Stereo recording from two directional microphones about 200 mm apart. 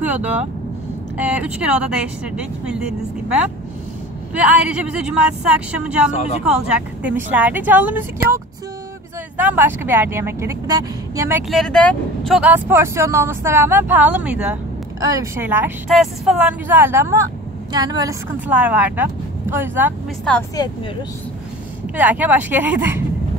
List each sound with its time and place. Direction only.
0.0 s a woman's voice: 10° right (ahead or behind)
9.4 s speech: 10° right (ahead or behind)
11.4 s a woman's voice: centre (ahead or behind); by 18.1 s 20° right (ahead or behind)
18.5 s speech: 5° right (ahead or behind)
20.3 s a woman's voice: 5° left (ahead or behind)
21.9 s speech: 10° right (ahead or behind)